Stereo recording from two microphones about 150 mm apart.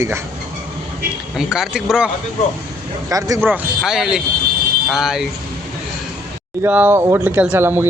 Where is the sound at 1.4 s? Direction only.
5° right (ahead or behind).